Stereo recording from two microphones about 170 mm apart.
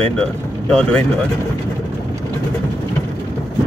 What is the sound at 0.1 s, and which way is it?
Speech, 5° left (ahead or behind).